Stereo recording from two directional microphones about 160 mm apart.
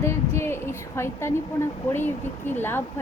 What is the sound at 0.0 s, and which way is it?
A woman's voice, 15° left (ahead or behind).